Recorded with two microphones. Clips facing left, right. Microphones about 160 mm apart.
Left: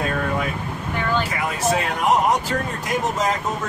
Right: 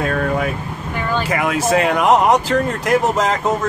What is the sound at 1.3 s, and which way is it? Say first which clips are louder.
Speech: right 5 dB; 80° right.